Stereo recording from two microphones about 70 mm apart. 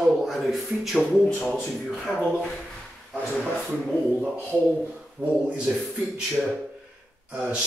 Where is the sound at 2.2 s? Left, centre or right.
Centre.